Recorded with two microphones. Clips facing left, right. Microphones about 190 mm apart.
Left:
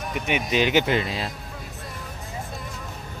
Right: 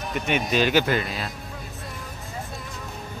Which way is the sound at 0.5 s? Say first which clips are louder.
Left 1 dB; 20° left (ahead or behind).